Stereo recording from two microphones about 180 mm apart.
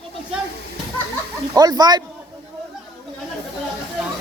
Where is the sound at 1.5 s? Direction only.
20° right (ahead or behind).